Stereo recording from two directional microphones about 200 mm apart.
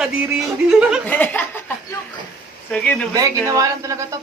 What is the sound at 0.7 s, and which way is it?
Speech, 5° right (ahead or behind).